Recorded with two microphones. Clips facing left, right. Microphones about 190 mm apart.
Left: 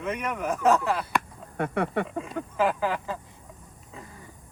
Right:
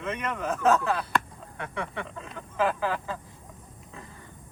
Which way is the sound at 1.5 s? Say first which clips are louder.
Left 8 dB; 55° left (ahead or behind).